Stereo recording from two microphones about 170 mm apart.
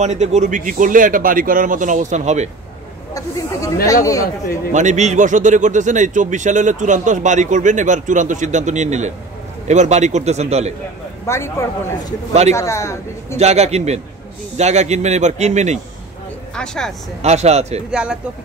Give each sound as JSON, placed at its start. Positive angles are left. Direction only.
{"t": 0.0, "sound": "speech", "side_deg": -45}
{"t": 3.2, "sound": "speech", "side_deg": 20}
{"t": 4.7, "sound": "a man's voice", "side_deg": -45}
{"t": 11.2, "sound": "a man's voice", "side_deg": 15}
{"t": 13.4, "sound": "a man's voice", "side_deg": -40}
{"t": 16.5, "sound": "speech", "side_deg": 5}
{"t": 17.2, "sound": "a man's voice", "side_deg": -40}